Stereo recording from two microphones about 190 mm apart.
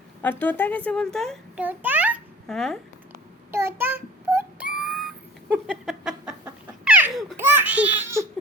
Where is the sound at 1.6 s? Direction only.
10° right (ahead or behind).